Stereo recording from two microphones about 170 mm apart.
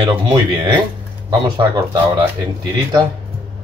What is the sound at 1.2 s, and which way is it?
Speech, 25° right (ahead or behind).